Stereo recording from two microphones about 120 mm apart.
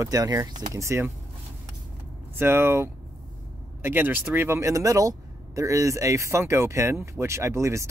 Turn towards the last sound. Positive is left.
turn(degrees=-25)  # may be behind; listen again after turning